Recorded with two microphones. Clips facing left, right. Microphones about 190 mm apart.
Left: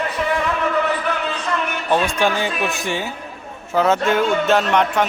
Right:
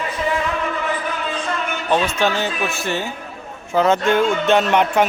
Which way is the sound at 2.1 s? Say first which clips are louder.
Even; 15° left (ahead or behind).